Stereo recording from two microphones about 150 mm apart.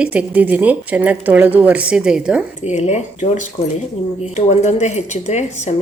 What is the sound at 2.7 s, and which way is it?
Speech, 50° left (ahead or behind).